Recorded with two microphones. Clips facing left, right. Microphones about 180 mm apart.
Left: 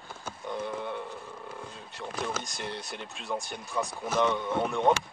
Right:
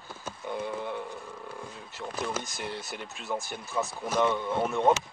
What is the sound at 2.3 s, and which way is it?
Speech, centre (ahead or behind).